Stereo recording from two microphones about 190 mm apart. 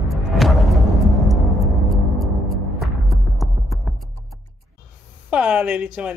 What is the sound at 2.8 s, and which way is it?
Music, centre (ahead or behind).